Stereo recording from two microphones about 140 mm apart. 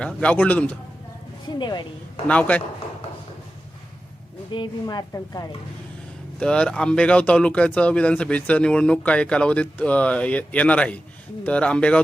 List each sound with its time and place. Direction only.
0.0 s speech: 10° left (ahead or behind)
1.5 s speech: 30° left (ahead or behind)
2.2 s speech: 10° left (ahead or behind)
4.5 s a woman's voice: 30° left (ahead or behind)
6.4 s speech: 5° left (ahead or behind)